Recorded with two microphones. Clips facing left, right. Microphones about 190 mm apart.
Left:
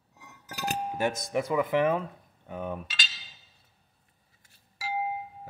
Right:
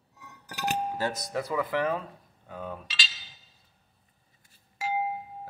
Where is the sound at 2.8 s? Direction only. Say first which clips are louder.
Right 1 dB; 50° left (ahead or behind).